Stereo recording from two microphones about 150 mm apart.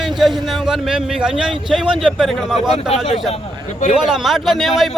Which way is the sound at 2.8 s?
40° left (ahead or behind).